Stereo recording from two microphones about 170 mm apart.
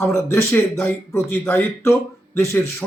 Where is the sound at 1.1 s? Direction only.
15° left (ahead or behind).